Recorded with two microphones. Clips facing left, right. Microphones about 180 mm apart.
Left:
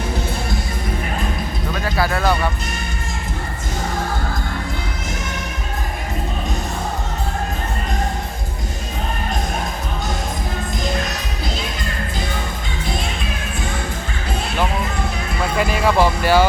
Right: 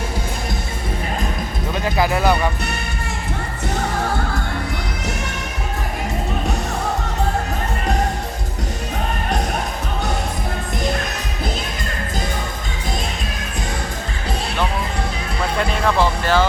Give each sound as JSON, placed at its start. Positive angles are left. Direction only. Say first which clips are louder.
{"t": 1.7, "sound": "speech", "louder": "right 2 dB", "side_deg": -20}
{"t": 15.5, "sound": "speech", "louder": "left 2 dB", "side_deg": 5}